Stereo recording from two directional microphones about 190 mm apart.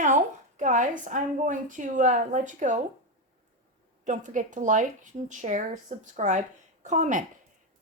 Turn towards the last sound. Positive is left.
turn(degrees=-40)  # may be behind; listen again after turning